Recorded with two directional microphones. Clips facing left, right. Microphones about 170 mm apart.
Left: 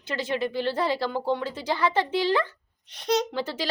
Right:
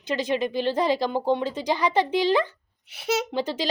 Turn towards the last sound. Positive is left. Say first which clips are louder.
# right 3 dB
turn(degrees=-20)  # may be behind; listen again after turning